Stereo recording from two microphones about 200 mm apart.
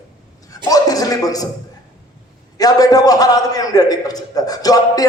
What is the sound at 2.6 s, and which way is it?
A man's voice, 20° left (ahead or behind).